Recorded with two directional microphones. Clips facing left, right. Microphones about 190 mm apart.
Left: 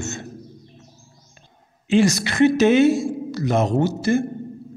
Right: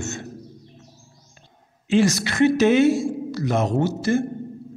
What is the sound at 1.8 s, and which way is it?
A woman's voice, 15° left (ahead or behind).